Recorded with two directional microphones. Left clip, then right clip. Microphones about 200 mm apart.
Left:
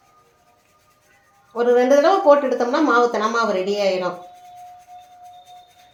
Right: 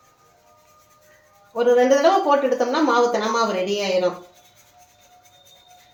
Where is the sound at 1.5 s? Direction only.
40° left (ahead or behind).